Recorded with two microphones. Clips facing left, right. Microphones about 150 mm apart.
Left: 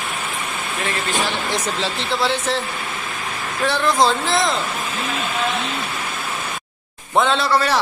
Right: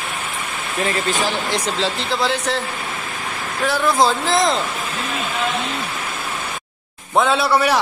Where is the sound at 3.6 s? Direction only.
5° right (ahead or behind).